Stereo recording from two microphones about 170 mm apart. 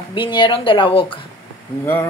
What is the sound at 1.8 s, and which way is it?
Speech, 15° left (ahead or behind).